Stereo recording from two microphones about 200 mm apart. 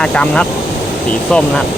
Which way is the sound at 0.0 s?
5° left (ahead or behind).